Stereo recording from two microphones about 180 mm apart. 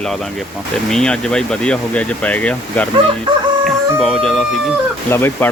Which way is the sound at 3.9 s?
Centre (ahead or behind).